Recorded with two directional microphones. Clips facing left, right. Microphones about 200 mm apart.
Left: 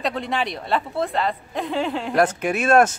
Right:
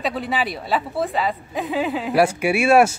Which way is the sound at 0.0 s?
5° right (ahead or behind).